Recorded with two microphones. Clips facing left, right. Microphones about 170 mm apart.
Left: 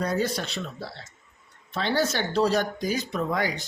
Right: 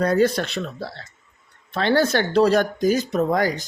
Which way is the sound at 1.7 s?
65° right (ahead or behind).